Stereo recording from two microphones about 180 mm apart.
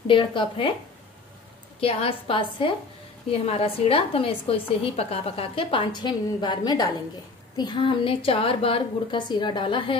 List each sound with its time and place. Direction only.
0.0 s a woman's voice: 30° left (ahead or behind)
1.8 s a woman's voice: 30° left (ahead or behind)